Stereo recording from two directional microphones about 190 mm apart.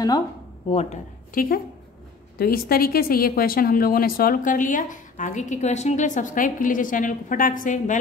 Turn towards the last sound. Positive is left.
turn(degrees=45)  # may be behind; listen again after turning